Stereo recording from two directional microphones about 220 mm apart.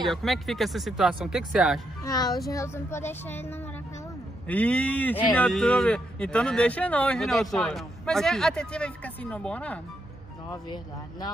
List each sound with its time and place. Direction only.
0.0 s speech: centre (ahead or behind)
2.0 s speech: 20° left (ahead or behind)
10.5 s speech: 20° left (ahead or behind)